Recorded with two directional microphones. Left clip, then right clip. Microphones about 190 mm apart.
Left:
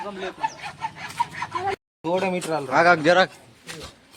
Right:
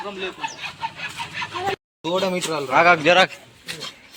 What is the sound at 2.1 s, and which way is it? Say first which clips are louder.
Speech: right 1 dB; 15° left (ahead or behind).